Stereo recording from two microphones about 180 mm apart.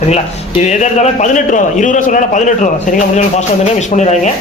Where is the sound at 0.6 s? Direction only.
40° left (ahead or behind).